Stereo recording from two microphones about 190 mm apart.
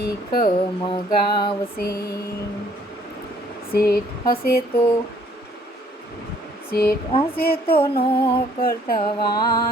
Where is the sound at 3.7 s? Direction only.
50° left (ahead or behind).